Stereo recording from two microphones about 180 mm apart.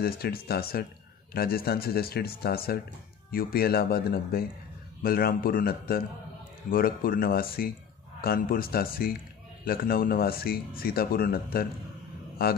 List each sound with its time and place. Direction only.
0.0 s a man's voice: 60° left (ahead or behind)